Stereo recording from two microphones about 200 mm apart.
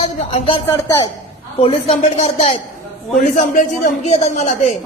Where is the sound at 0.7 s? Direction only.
15° left (ahead or behind).